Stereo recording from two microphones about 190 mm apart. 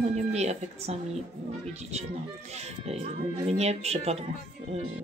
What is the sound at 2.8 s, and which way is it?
A woman's voice, 35° right (ahead or behind).